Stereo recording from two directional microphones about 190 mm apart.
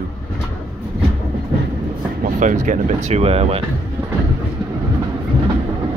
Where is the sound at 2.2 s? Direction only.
40° right (ahead or behind).